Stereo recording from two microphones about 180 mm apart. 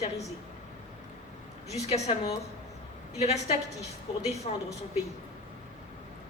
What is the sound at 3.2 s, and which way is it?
A woman's voice, 35° left (ahead or behind).